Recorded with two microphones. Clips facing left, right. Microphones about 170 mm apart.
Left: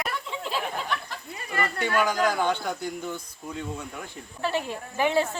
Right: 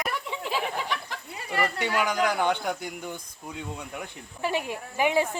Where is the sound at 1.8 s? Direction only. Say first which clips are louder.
Left 4 dB; 15° right (ahead or behind).